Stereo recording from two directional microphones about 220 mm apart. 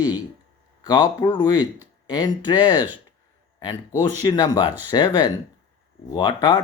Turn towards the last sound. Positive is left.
turn(degrees=20)  # may be behind; listen again after turning